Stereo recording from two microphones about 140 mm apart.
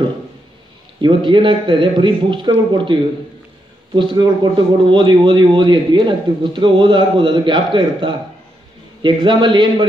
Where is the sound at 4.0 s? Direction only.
35° right (ahead or behind).